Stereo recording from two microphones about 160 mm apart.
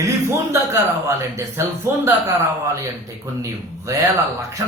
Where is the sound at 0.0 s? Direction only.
15° right (ahead or behind).